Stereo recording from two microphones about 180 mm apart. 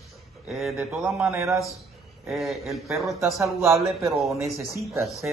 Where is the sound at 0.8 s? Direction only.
5° right (ahead or behind).